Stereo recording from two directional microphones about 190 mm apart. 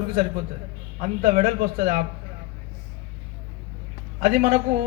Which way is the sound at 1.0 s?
40° right (ahead or behind).